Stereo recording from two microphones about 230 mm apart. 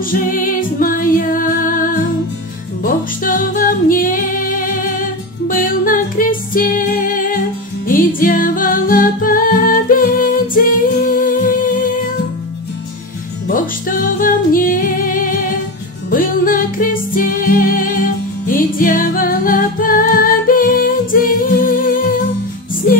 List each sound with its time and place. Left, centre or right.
0.1 s music: left
13.5 s music: left